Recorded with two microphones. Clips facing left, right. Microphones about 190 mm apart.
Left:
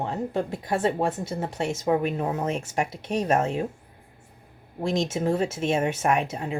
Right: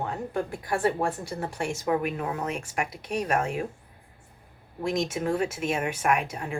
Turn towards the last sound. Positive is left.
turn(degrees=25)  # may be behind; listen again after turning